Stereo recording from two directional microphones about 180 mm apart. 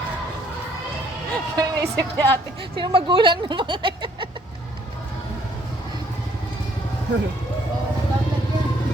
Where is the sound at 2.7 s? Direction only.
25° right (ahead or behind).